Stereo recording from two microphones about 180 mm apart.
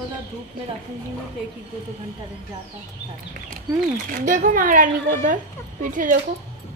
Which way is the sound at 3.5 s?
45° right (ahead or behind).